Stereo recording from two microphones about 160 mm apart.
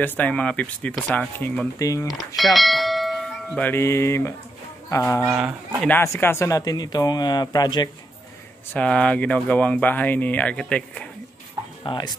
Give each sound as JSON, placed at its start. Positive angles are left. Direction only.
{"t": 0.0, "sound": "speech", "side_deg": 10}
{"t": 1.8, "sound": "speech", "side_deg": 20}
{"t": 2.0, "sound": "bell", "side_deg": 0}
{"t": 3.6, "sound": "speech", "side_deg": 15}
{"t": 5.3, "sound": "speech", "side_deg": -10}
{"t": 5.9, "sound": "speech", "side_deg": 15}
{"t": 8.7, "sound": "speech", "side_deg": 5}
{"t": 11.8, "sound": "speech", "side_deg": 30}